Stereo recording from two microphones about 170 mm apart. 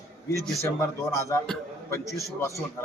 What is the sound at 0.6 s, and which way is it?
Speech, 15° left (ahead or behind).